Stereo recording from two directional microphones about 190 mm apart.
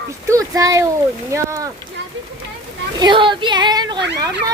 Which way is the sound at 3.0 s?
25° right (ahead or behind).